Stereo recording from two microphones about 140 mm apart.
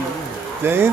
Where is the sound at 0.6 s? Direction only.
15° right (ahead or behind).